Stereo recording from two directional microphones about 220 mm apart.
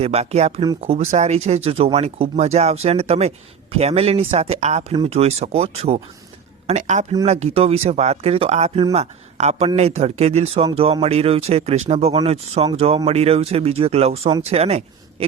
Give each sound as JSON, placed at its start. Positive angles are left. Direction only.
{"t": 0.0, "sound": "a man's voice", "side_deg": -30}